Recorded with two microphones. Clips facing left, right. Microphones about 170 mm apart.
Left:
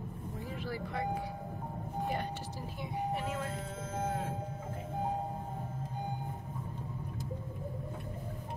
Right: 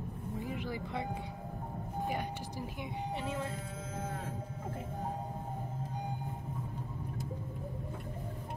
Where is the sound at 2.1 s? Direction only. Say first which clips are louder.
Even; 15° right (ahead or behind).